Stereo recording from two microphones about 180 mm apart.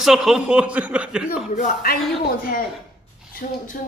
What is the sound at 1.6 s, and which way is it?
Speech, 55° left (ahead or behind).